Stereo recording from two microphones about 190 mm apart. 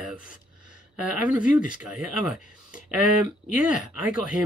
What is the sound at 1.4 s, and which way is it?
Speech, 45° left (ahead or behind).